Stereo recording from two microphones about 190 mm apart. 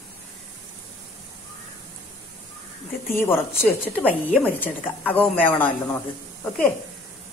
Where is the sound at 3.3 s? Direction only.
10° left (ahead or behind).